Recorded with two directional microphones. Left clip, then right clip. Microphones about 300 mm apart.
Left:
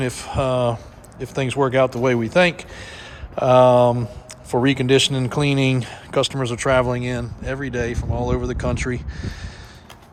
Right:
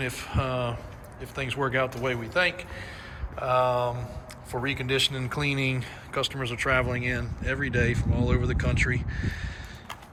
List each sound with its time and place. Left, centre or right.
0.0 s speech: centre
3.3 s a sound: centre
4.5 s speech: centre